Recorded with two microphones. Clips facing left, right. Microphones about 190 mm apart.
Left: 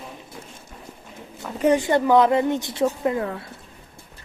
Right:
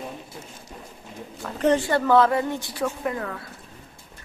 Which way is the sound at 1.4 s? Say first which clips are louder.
Left 2 dB; 10° left (ahead or behind).